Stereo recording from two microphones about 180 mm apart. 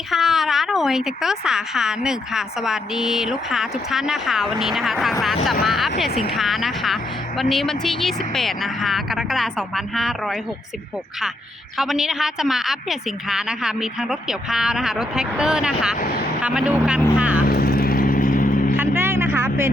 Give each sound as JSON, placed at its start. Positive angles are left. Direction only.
{"t": 0.1, "sound": "speech", "side_deg": 0}
{"t": 11.8, "sound": "speech", "side_deg": 0}
{"t": 16.0, "sound": "speech", "side_deg": 60}
{"t": 16.4, "sound": "speech", "side_deg": -5}
{"t": 17.4, "sound": "vehicle", "side_deg": 60}
{"t": 18.8, "sound": "vehicle", "side_deg": -15}